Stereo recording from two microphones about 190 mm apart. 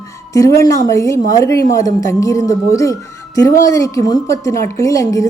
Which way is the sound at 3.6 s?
15° left (ahead or behind).